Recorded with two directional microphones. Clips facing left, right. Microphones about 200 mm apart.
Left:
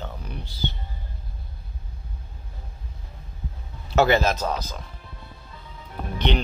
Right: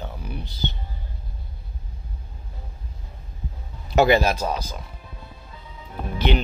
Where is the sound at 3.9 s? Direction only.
15° right (ahead or behind).